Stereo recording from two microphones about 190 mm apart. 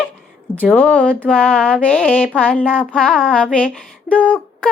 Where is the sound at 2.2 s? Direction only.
5° right (ahead or behind).